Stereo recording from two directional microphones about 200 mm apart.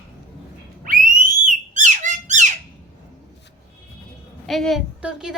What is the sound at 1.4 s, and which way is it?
Squawk, 40° right (ahead or behind).